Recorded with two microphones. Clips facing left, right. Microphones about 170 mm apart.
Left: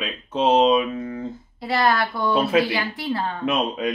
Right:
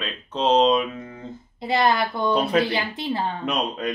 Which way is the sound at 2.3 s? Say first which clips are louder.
Left 2 dB; 5° left (ahead or behind).